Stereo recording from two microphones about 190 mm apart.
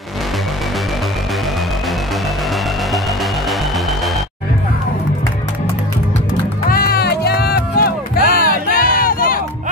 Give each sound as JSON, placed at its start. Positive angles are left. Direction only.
{"t": 3.4, "sound": "music", "side_deg": 0}
{"t": 6.7, "sound": "music", "side_deg": 55}